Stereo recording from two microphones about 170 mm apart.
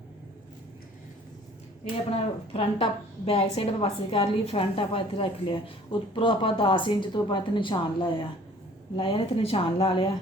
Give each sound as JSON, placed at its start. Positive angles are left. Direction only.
{"t": 1.8, "sound": "a woman's voice", "side_deg": 35}